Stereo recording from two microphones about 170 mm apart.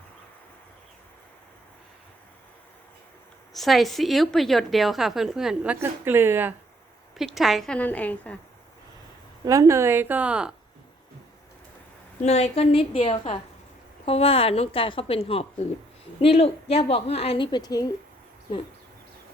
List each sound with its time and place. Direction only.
3.5 s a woman's voice: centre (ahead or behind)
5.8 s speech: 15° right (ahead or behind)
7.2 s a woman's voice: centre (ahead or behind)
9.4 s speech: 20° right (ahead or behind)
12.2 s a woman's voice: 40° left (ahead or behind); by 17.9 s 20° left (ahead or behind)